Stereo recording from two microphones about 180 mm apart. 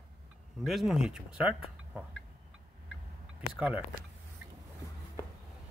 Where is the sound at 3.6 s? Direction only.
5° right (ahead or behind).